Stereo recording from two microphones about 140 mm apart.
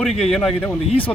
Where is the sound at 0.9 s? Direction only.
40° left (ahead or behind).